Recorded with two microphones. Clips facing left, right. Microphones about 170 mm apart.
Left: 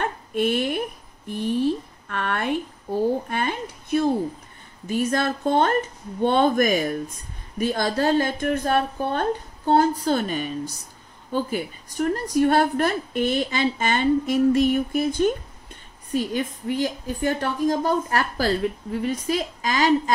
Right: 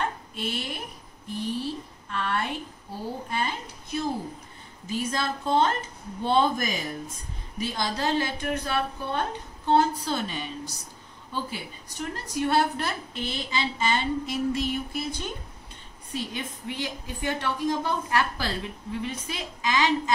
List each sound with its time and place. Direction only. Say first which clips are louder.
0.0 s a woman's voice: left 7 dB; 55° left (ahead or behind)